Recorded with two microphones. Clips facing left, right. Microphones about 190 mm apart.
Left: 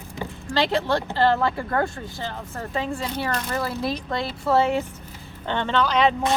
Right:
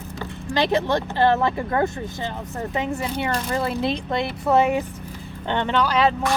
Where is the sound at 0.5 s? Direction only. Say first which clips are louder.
Right 2 dB; 20° right (ahead or behind).